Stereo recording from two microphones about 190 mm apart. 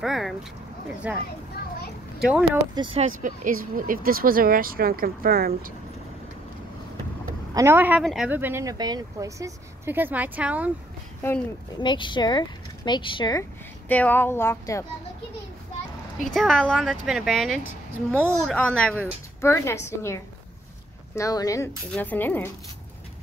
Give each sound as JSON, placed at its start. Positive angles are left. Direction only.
{"t": 0.0, "sound": "speech", "side_deg": 0}
{"t": 2.2, "sound": "speech", "side_deg": -5}
{"t": 2.7, "sound": "speech", "side_deg": -25}
{"t": 3.2, "sound": "speech", "side_deg": -45}
{"t": 7.5, "sound": "speech", "side_deg": -15}
{"t": 11.8, "sound": "speech", "side_deg": 25}
{"t": 16.3, "sound": "a woman's voice", "side_deg": 0}